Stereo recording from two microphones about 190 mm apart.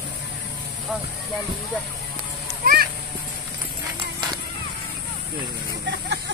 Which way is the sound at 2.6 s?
50° right (ahead or behind).